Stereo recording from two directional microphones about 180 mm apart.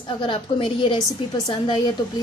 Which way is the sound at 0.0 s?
30° left (ahead or behind).